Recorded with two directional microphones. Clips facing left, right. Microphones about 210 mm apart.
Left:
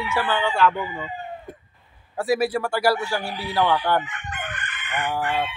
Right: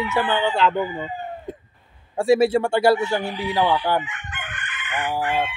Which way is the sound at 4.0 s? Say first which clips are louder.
Left 2 dB; 40° left (ahead or behind).